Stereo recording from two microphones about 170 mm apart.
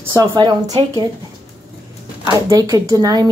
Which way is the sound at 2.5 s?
20° right (ahead or behind).